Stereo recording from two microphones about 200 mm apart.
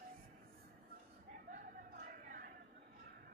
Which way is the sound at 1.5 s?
45° right (ahead or behind).